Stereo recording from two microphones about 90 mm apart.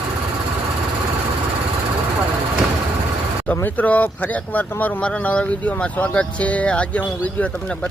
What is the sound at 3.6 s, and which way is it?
Speech, 20° left (ahead or behind).